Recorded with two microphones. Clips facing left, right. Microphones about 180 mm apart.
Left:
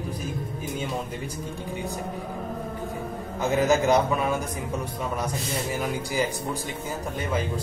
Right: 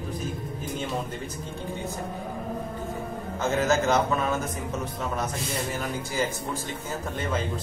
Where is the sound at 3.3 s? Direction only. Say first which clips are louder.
Left 2 dB; 15° left (ahead or behind).